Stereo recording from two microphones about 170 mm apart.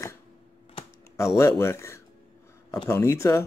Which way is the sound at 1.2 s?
15° left (ahead or behind).